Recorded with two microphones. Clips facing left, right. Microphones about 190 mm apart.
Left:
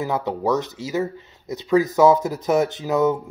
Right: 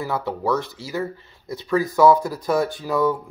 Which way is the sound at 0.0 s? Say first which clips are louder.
Left 2 dB; 20° left (ahead or behind).